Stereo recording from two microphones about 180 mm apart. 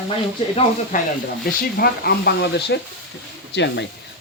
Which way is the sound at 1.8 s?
60° left (ahead or behind).